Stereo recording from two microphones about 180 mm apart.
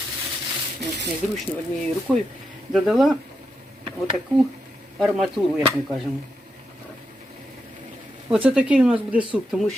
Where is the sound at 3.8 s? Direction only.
30° right (ahead or behind).